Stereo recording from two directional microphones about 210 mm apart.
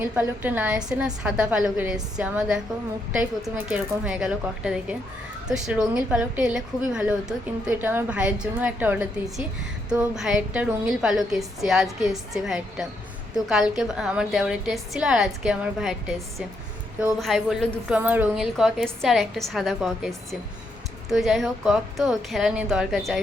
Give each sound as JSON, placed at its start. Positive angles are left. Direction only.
{"t": 0.0, "sound": "a woman's voice", "side_deg": -10}